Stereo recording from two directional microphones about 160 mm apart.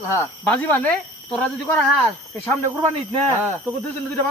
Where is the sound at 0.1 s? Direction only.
15° left (ahead or behind).